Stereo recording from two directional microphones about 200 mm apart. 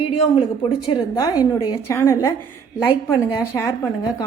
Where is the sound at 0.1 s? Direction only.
30° left (ahead or behind).